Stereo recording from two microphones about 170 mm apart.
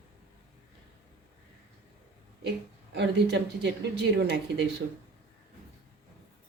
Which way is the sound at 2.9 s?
90° right.